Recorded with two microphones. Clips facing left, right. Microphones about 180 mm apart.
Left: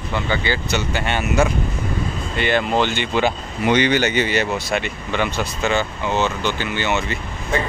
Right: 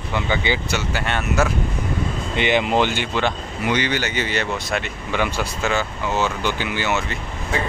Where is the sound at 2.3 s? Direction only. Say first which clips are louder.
Even; 15° right (ahead or behind).